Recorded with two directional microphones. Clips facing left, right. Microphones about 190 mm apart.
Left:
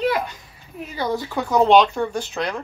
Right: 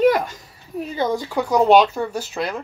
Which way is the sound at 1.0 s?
15° right (ahead or behind).